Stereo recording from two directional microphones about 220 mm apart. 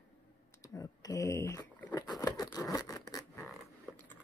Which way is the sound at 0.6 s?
15° left (ahead or behind).